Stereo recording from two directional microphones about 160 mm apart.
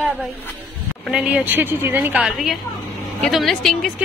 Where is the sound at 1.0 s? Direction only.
5° right (ahead or behind).